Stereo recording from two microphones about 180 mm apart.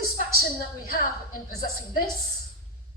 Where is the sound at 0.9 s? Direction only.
55° left (ahead or behind).